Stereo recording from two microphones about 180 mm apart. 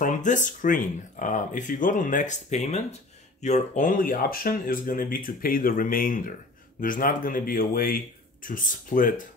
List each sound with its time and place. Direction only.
0.0 s speech: 45° left (ahead or behind)